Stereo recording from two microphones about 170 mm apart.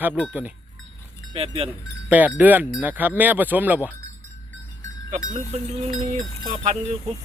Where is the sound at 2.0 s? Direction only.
10° right (ahead or behind).